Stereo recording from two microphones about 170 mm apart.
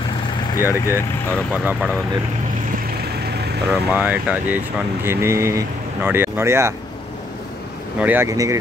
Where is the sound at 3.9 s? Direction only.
10° right (ahead or behind).